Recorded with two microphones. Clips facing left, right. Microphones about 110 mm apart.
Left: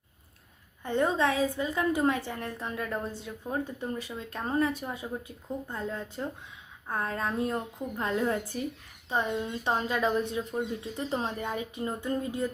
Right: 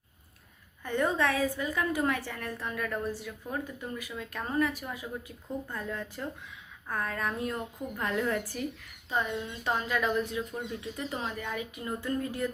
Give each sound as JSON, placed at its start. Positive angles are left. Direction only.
{"t": 0.9, "sound": "a woman's voice", "side_deg": 20}